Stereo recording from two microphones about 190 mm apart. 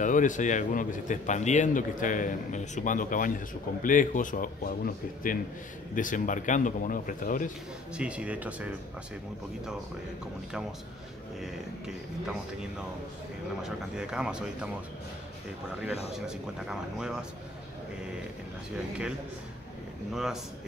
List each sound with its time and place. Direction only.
0.0 s a man's voice: 40° left (ahead or behind)
7.9 s speech: 5° right (ahead or behind)
13.6 s speech: 5° right (ahead or behind)
16.3 s speech: 5° right (ahead or behind)
20.1 s speech: centre (ahead or behind)